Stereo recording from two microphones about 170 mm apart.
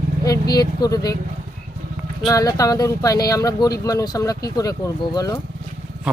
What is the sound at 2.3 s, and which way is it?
Speech, 20° left (ahead or behind).